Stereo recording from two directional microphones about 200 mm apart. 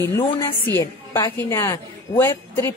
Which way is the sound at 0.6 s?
15° left (ahead or behind).